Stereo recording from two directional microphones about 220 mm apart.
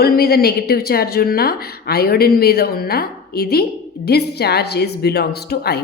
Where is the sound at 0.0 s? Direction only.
45° left (ahead or behind).